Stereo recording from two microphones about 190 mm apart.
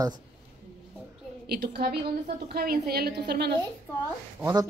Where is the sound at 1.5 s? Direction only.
55° right (ahead or behind).